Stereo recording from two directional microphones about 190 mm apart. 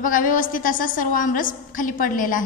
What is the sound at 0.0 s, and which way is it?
A woman's voice, 45° left (ahead or behind).